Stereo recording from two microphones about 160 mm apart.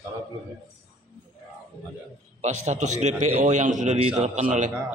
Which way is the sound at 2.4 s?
45° right (ahead or behind).